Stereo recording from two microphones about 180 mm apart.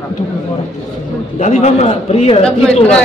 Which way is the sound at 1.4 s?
40° left (ahead or behind).